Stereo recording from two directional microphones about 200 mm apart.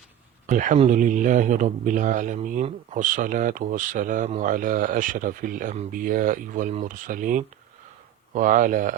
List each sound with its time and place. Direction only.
0.4 s speech: 40° right (ahead or behind)